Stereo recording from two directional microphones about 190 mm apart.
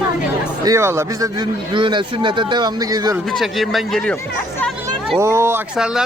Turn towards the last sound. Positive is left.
turn(degrees=-5)  # may be behind; listen again after turning